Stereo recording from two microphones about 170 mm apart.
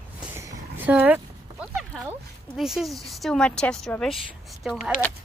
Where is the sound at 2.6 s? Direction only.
Centre (ahead or behind).